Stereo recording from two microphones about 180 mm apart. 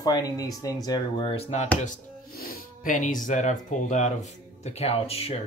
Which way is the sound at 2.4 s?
50° left (ahead or behind).